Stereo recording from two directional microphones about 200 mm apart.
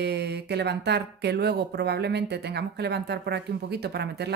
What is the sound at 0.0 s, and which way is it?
Speech, 55° right (ahead or behind).